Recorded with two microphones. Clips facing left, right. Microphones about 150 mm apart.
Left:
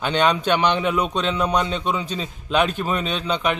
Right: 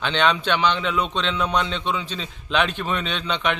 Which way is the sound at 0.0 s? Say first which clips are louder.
Left 2 dB; 10° left (ahead or behind).